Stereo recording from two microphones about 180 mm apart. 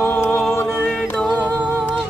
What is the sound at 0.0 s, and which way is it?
Music, 10° left (ahead or behind).